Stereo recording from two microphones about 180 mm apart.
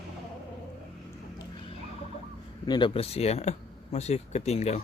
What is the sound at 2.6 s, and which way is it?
Speech, 25° left (ahead or behind).